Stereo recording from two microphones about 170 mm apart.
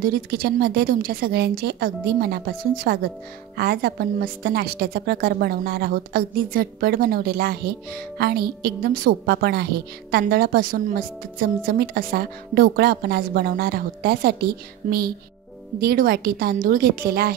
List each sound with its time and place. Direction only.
0.0 s a woman's voice: 65° right (ahead or behind)